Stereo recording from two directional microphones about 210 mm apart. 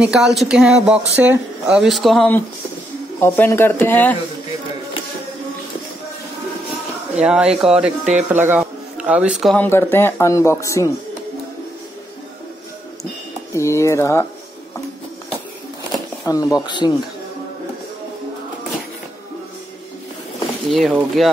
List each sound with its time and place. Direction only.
0.0 s speech: 5° right (ahead or behind)
7.2 s speech: 5° right (ahead or behind)
8.0 s speech: 35° right (ahead or behind)
8.3 s a man's voice: 10° right (ahead or behind)
9.7 s speech: 10° left (ahead or behind)
13.6 s speech: 15° left (ahead or behind)
16.3 s speech: 15° left (ahead or behind)
20.7 s speech: 5° right (ahead or behind)